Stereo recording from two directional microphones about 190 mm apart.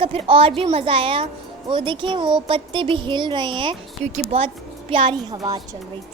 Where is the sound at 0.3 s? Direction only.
30° right (ahead or behind).